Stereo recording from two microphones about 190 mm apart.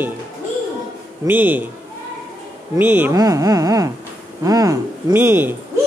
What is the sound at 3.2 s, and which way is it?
Speech, 20° right (ahead or behind).